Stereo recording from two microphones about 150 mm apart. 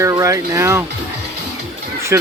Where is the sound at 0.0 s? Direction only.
20° right (ahead or behind).